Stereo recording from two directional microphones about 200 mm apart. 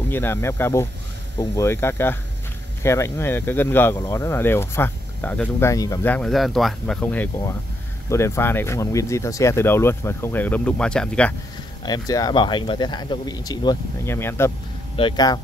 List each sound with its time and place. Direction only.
0.1 s speech: 10° left (ahead or behind)
11.8 s speech: 20° left (ahead or behind)
15.0 s speech: 20° left (ahead or behind)